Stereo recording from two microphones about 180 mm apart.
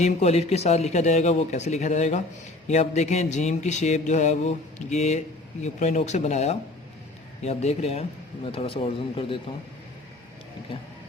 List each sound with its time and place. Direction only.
0.0 s mantra: 35° left (ahead or behind)
8.5 s speech: 30° left (ahead or behind)